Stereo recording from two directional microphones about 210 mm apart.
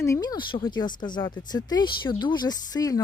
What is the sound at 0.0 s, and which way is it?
Speech, 15° left (ahead or behind).